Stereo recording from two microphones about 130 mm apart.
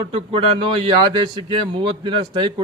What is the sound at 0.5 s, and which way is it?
Speech, 35° right (ahead or behind).